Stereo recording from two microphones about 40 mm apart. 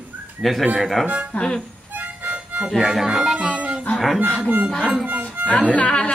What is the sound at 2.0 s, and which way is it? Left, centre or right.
Harmonica, right.